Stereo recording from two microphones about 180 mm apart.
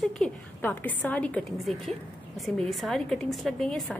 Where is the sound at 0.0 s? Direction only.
5° left (ahead or behind).